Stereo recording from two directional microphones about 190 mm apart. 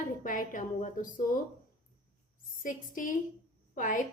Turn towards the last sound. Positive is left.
turn(degrees=45)  # may be behind; listen again after turning